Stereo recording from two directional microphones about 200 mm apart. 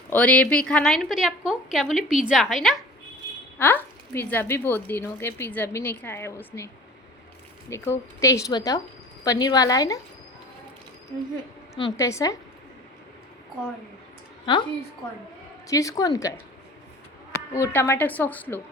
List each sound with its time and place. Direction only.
0.1 s a woman's voice: 5° left (ahead or behind)
7.7 s a woman's voice: 15° left (ahead or behind)
11.7 s speech: 20° left (ahead or behind)
14.4 s a woman's voice: 25° left (ahead or behind)
17.5 s speech: 10° left (ahead or behind)